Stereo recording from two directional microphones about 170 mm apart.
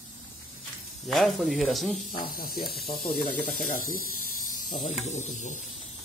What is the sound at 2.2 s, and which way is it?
Speech, 55° left (ahead or behind).